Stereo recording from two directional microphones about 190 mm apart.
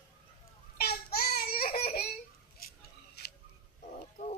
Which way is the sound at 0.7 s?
55° left (ahead or behind).